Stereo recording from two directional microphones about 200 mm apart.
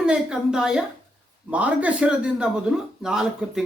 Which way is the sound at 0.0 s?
5° right (ahead or behind).